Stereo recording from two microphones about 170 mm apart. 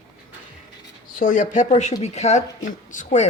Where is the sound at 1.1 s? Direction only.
50° left (ahead or behind).